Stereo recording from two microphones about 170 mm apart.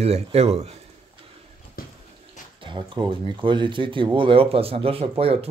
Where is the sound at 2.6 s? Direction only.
30° right (ahead or behind).